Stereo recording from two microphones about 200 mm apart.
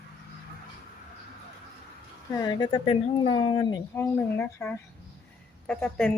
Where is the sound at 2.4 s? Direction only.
25° left (ahead or behind).